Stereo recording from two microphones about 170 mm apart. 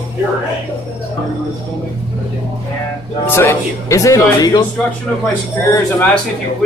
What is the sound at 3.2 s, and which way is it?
Music, 15° left (ahead or behind).